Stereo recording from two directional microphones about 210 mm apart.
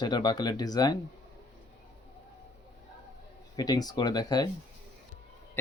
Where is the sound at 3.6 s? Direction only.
20° left (ahead or behind).